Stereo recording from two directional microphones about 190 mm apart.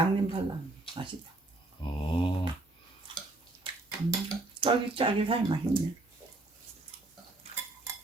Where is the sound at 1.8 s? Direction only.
25° left (ahead or behind).